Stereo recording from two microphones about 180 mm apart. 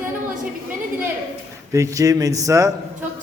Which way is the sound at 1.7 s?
20° right (ahead or behind).